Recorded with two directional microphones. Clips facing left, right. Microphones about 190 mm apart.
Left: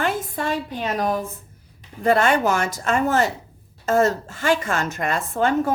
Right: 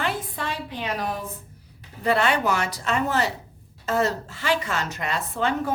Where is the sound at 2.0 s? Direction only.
45° left (ahead or behind).